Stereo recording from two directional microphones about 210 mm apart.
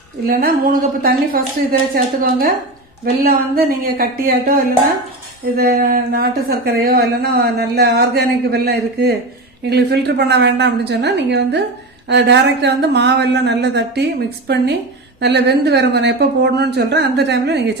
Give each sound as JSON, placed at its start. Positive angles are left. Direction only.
{"t": 0.3, "sound": "speech", "side_deg": -45}
{"t": 3.3, "sound": "speech", "side_deg": -45}